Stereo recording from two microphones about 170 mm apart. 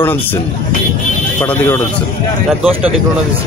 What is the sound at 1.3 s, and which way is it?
Speech, 15° left (ahead or behind).